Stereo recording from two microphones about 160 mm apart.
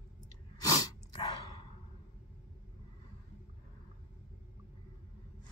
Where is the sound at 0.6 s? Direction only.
25° left (ahead or behind).